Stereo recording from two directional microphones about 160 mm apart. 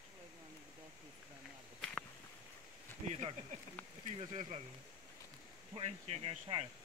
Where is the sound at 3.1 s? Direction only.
45° right (ahead or behind).